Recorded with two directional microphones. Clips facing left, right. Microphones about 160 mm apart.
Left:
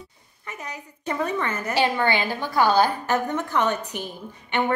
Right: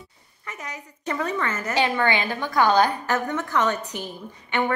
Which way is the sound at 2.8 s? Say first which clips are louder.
Even; 15° left (ahead or behind).